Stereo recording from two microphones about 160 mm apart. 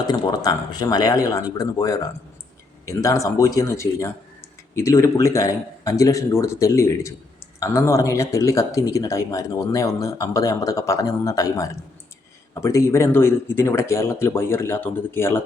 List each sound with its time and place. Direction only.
0.0 s speech: 25° left (ahead or behind)